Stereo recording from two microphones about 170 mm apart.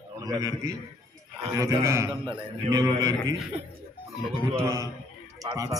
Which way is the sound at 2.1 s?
30° right (ahead or behind).